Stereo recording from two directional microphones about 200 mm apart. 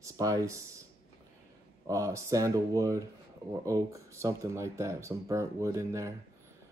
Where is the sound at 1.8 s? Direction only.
15° right (ahead or behind).